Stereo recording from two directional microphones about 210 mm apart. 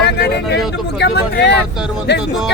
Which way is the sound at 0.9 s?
55° left (ahead or behind).